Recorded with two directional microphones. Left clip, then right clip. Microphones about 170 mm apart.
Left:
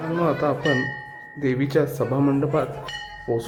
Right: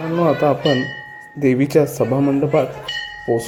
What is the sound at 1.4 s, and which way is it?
Speech, 25° right (ahead or behind).